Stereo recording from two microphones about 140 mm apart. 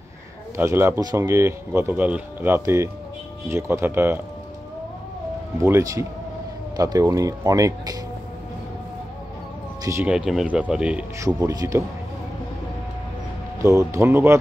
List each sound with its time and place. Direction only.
0.6 s speech: 15° right (ahead or behind)
5.6 s speech: 20° right (ahead or behind)
10.0 s speech: 5° right (ahead or behind)
11.1 s speech: 20° right (ahead or behind)
13.6 s speech: 20° right (ahead or behind)